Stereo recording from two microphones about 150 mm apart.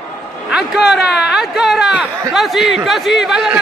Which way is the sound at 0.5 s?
5° right (ahead or behind).